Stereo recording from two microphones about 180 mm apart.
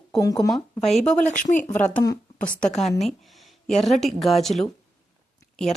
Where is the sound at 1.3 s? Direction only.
45° left (ahead or behind).